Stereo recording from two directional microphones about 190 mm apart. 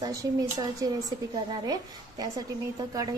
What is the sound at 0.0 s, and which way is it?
A woman's voice, 20° right (ahead or behind).